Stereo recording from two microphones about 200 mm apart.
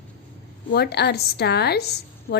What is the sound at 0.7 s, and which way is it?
A woman's voice, 55° left (ahead or behind).